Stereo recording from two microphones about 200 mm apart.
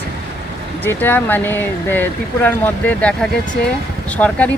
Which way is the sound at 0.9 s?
10° left (ahead or behind).